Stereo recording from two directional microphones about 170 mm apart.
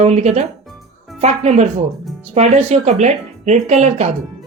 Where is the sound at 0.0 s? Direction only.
40° right (ahead or behind).